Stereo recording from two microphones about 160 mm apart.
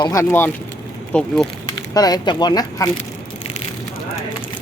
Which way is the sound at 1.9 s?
25° left (ahead or behind).